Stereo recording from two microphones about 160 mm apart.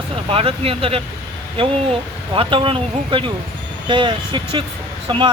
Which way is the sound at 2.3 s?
35° right (ahead or behind).